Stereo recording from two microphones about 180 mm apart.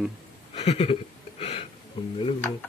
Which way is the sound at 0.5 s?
35° left (ahead or behind).